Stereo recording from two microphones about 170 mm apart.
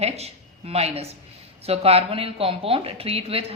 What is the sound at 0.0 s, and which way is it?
A woman's voice, 40° right (ahead or behind).